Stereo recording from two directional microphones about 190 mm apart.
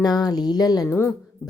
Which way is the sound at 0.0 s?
20° left (ahead or behind).